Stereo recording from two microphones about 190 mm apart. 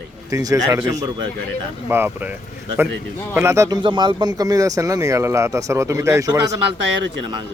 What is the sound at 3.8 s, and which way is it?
A man's voice, 25° right (ahead or behind).